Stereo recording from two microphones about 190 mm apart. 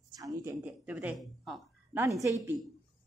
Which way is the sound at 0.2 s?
20° right (ahead or behind).